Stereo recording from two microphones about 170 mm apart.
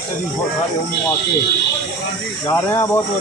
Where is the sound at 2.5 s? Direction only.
15° left (ahead or behind).